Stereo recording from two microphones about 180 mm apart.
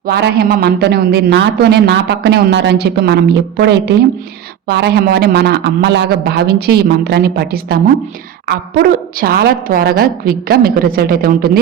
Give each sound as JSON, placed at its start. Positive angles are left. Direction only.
{"t": 0.0, "sound": "a man's voice", "side_deg": -65}